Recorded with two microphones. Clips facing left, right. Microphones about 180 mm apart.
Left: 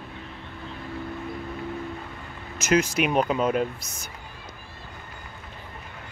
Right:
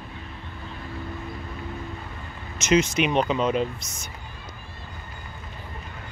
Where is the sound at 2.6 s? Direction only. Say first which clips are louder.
Right 1 dB; 55° left (ahead or behind).